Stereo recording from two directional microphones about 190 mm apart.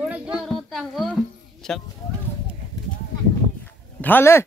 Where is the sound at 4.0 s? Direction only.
10° left (ahead or behind).